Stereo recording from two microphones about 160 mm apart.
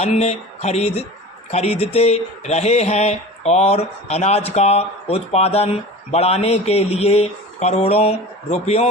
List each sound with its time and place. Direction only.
0.0 s speech: 45° left (ahead or behind)